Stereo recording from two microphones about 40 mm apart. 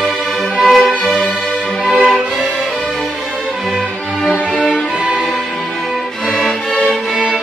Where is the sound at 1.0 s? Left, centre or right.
Centre.